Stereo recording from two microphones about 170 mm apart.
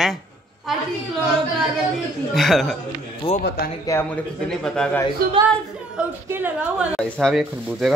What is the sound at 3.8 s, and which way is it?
A man's voice, 15° left (ahead or behind).